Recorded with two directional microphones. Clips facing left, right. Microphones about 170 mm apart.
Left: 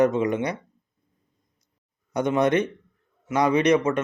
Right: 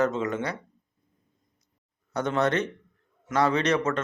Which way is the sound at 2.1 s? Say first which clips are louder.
Left 4 dB; 15° left (ahead or behind).